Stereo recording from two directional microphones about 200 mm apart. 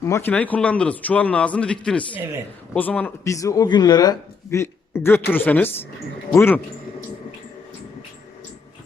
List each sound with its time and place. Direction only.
0.0 s speech: 10° left (ahead or behind)